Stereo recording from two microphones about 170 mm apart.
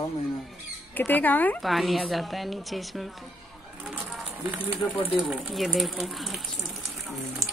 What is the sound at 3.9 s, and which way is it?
Speech, 10° right (ahead or behind).